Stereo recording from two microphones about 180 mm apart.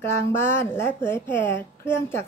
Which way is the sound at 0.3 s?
15° left (ahead or behind).